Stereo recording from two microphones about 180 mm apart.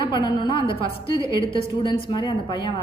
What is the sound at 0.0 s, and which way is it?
A woman's voice, 25° left (ahead or behind).